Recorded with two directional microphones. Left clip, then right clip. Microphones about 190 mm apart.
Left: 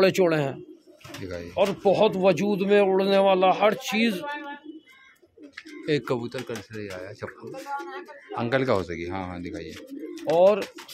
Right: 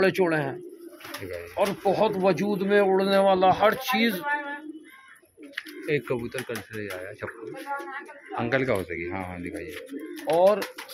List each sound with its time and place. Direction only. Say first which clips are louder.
0.0 s speech: left 2 dB; 50° left (ahead or behind)
1.2 s speech: left 2 dB; 15° left (ahead or behind)
1.6 s speech: left 3 dB; 40° left (ahead or behind)
5.9 s speech: left 2 dB; 25° left (ahead or behind)
6.7 s speech: right 1 dB; 5° left (ahead or behind)
8.5 s speech: left 2 dB; 20° left (ahead or behind)
10.3 s speech: left 1 dB; 25° left (ahead or behind)